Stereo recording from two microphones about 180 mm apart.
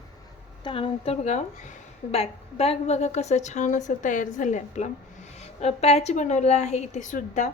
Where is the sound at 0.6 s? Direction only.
30° left (ahead or behind).